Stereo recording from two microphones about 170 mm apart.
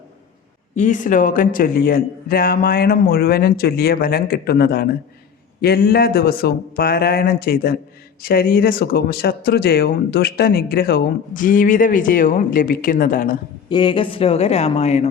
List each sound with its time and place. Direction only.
0.8 s speech: 45° left (ahead or behind)
13.7 s speech: 30° left (ahead or behind)